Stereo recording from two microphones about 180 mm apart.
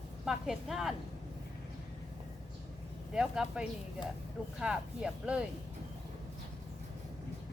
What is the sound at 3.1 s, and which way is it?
Speech, 5° right (ahead or behind).